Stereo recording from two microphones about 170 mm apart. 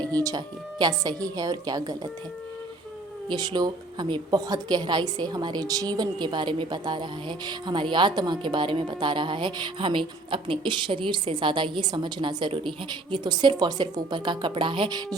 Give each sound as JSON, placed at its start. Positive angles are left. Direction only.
{"t": 0.1, "sound": "a woman's voice", "side_deg": -20}
{"t": 3.2, "sound": "a woman's voice", "side_deg": -25}